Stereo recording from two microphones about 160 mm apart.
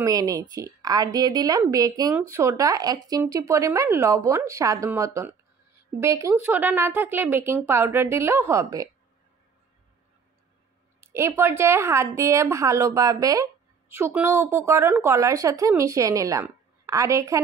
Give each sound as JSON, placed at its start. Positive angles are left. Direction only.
{"t": 0.0, "sound": "a woman's voice", "side_deg": -25}
{"t": 11.0, "sound": "a woman's voice", "side_deg": -15}